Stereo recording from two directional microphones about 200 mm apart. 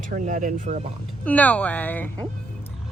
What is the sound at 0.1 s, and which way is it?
Speech, 40° right (ahead or behind).